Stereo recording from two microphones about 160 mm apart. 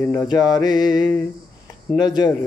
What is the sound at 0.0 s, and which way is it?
Mantra, 15° left (ahead or behind).